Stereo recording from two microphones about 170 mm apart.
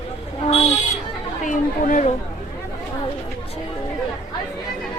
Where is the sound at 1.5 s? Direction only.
50° left (ahead or behind).